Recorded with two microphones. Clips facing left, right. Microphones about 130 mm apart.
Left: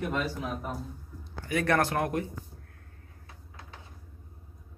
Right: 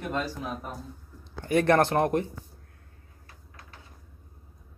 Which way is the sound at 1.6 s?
30° right (ahead or behind).